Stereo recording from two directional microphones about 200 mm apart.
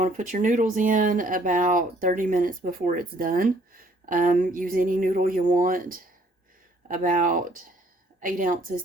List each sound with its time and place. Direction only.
0.0 s speech: 40° right (ahead or behind)